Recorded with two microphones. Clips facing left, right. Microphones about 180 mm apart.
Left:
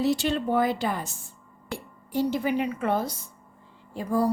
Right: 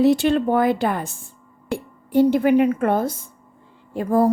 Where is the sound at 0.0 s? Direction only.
55° right (ahead or behind).